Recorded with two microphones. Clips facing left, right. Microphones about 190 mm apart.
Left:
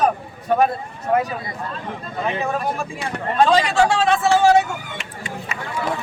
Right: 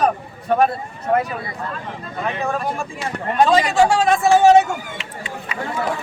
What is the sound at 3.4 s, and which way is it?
A man's voice, 5° right (ahead or behind).